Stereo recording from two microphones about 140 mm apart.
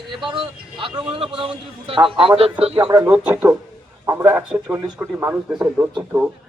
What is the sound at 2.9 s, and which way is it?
A man's voice, 15° right (ahead or behind).